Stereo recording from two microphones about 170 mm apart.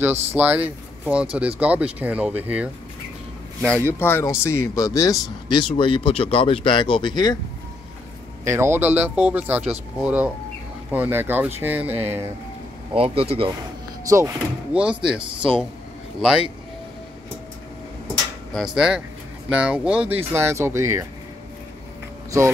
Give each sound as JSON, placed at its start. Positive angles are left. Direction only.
{"t": 0.0, "sound": "speech", "side_deg": -10}
{"t": 4.0, "sound": "speech", "side_deg": 15}
{"t": 8.5, "sound": "speech", "side_deg": -15}
{"t": 12.9, "sound": "speech", "side_deg": -35}
{"t": 14.0, "sound": "speech", "side_deg": -15}
{"t": 14.7, "sound": "speech", "side_deg": -5}
{"t": 18.5, "sound": "speech", "side_deg": 0}